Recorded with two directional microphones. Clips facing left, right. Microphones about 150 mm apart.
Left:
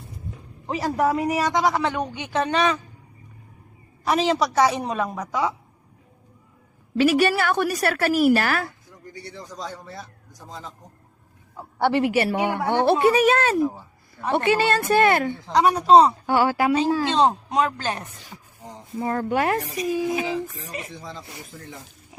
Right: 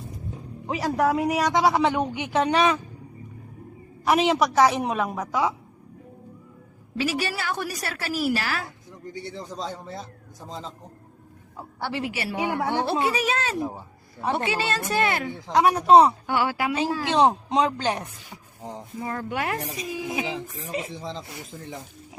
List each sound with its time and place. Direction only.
0.7 s a woman's voice: centre (ahead or behind)
1.6 s a man's voice: 15° right (ahead or behind)
4.0 s a woman's voice: 5° right (ahead or behind)
6.9 s a woman's voice: 60° left (ahead or behind)
9.1 s a man's voice: 25° right (ahead or behind)
11.8 s a woman's voice: 60° left (ahead or behind)
15.5 s a woman's voice: centre (ahead or behind)
16.2 s speech: 40° left (ahead or behind)
17.1 s a man's voice: 15° right (ahead or behind)
18.3 s a sound: 10° right (ahead or behind)
18.9 s speech: 40° left (ahead or behind)
19.7 s a man's voice: 25° right (ahead or behind)